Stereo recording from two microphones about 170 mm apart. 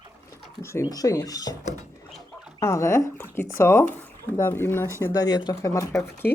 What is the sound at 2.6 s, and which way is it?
Speech, 15° left (ahead or behind).